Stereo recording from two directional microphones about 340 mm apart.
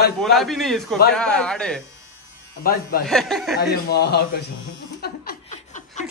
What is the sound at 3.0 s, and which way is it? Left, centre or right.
Speech, centre.